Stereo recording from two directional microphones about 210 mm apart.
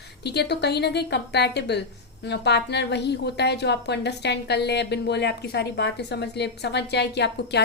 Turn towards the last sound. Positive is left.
turn(degrees=55)  # may be behind; listen again after turning